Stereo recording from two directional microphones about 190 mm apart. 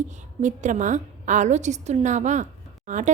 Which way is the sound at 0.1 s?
40° right (ahead or behind).